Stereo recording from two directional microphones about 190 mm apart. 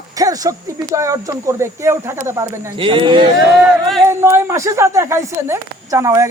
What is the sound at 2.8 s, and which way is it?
Speech, 25° right (ahead or behind).